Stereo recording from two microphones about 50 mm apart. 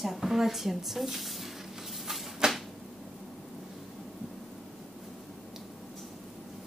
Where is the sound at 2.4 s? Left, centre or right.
Centre.